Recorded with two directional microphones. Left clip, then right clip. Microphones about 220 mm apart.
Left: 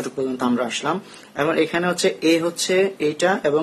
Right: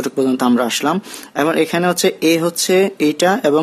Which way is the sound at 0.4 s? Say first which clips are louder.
Right 6 dB; 50° right (ahead or behind).